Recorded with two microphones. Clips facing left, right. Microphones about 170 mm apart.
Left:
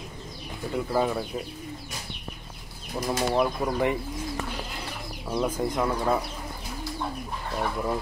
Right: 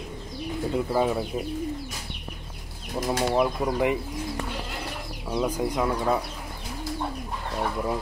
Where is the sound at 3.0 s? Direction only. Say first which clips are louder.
Right 1 dB; 10° right (ahead or behind).